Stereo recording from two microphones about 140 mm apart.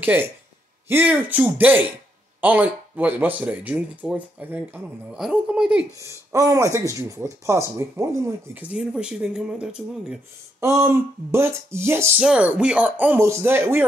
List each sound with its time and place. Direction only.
0.0 s speech: 15° right (ahead or behind)
5.9 s speech: 25° right (ahead or behind); by 10.1 s 5° right (ahead or behind)
10.6 s speech: 20° right (ahead or behind)
12.2 s speech: 5° right (ahead or behind)